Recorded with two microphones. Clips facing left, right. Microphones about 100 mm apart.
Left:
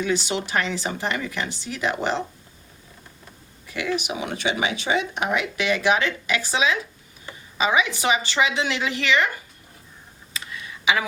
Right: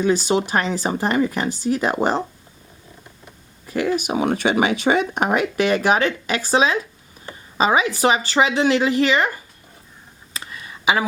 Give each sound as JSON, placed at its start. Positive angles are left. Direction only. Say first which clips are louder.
{"t": 0.0, "sound": "speech", "louder": "right 6 dB", "side_deg": -40}
{"t": 3.7, "sound": "speech", "louder": "right 6 dB", "side_deg": -45}
{"t": 10.3, "sound": "a sound", "louder": "right 1 dB", "side_deg": -40}